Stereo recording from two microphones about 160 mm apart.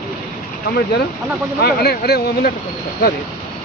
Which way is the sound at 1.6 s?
80° left.